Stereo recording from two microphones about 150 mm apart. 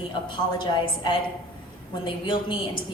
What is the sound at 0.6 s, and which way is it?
A woman's voice, 30° left (ahead or behind).